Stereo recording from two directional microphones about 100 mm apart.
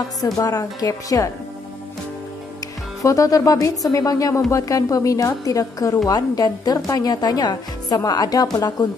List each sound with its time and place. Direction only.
0.2 s a woman's voice: 35° left (ahead or behind)
3.0 s a woman's voice: 35° left (ahead or behind)